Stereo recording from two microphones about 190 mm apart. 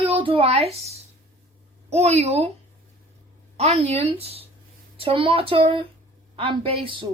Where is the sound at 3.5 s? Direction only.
35° right (ahead or behind).